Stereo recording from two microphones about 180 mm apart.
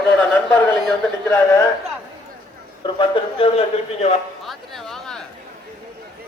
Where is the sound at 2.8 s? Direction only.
30° left (ahead or behind).